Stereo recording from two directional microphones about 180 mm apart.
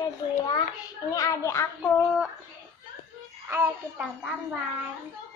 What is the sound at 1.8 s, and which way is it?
Speech, centre (ahead or behind).